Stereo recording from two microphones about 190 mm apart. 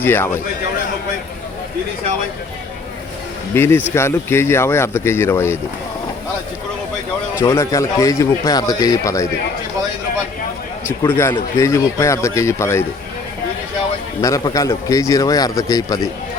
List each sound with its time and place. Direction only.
0.0 s speech: 10° left (ahead or behind)
3.5 s speech: 15° left (ahead or behind)
7.3 s speech: 15° left (ahead or behind)
11.0 s speech: 10° left (ahead or behind)
14.2 s speech: 15° left (ahead or behind)